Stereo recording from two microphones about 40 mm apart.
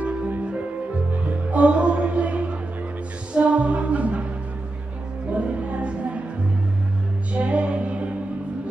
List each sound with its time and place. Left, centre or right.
1.1 s music: right
5.3 s music: right
7.3 s music: right